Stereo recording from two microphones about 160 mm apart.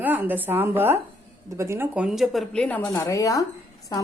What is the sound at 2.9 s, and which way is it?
Speech, 20° left (ahead or behind).